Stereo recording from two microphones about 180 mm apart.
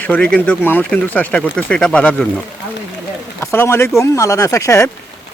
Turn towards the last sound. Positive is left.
turn(degrees=15)  # may be behind; listen again after turning